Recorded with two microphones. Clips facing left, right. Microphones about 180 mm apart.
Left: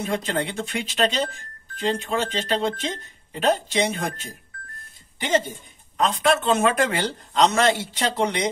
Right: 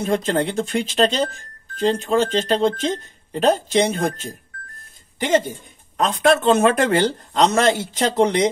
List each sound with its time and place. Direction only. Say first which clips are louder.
0.0 s a man's voice: right 5 dB; 45° right (ahead or behind)
5.9 s a man's voice: right 4 dB; 45° right (ahead or behind)